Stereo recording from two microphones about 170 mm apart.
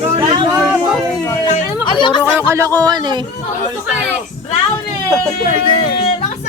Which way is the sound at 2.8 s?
25° right (ahead or behind).